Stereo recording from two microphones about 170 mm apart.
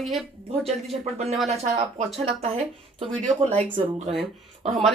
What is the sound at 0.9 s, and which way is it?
A woman's voice, 35° right (ahead or behind).